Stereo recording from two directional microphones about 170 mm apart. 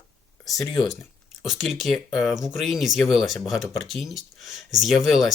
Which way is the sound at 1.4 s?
Centre (ahead or behind).